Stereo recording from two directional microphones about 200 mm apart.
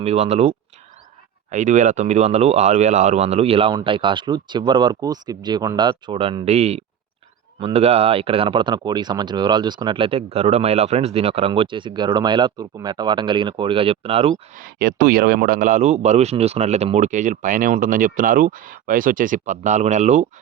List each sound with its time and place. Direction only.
0.0 s speech: 30° right (ahead or behind)
14.6 s speech: 45° right (ahead or behind)